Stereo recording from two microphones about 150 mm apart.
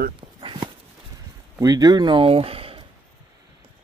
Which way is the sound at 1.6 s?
25° right (ahead or behind).